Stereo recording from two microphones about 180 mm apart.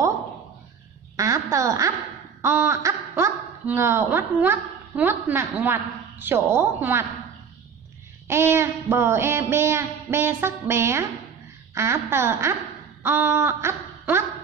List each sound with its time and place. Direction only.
1.1 s speech: 15° right (ahead or behind)
8.3 s speech: 15° right (ahead or behind)
13.0 s a sound: 10° right (ahead or behind)